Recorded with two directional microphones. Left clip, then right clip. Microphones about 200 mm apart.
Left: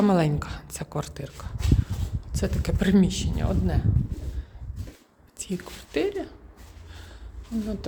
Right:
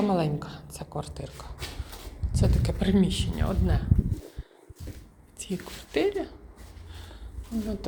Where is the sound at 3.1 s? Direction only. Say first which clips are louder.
Left 1 dB; 20° left (ahead or behind).